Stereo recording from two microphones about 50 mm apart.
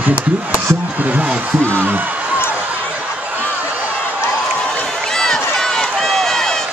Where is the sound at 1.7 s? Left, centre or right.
Right.